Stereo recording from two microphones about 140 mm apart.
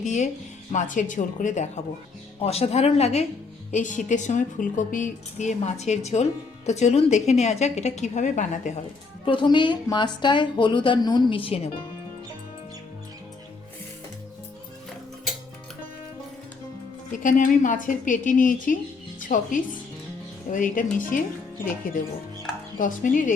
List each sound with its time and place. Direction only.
0.0 s speech: 60° left (ahead or behind)
2.4 s a woman's voice: 45° left (ahead or behind)
3.7 s a woman's voice: 65° left (ahead or behind)
9.2 s a woman's voice: 35° left (ahead or behind)
17.1 s a woman's voice: 70° left (ahead or behind)
22.8 s a woman's voice: 65° left (ahead or behind)